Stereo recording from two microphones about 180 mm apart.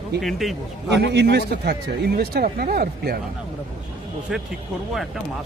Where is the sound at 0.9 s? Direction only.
70° right (ahead or behind).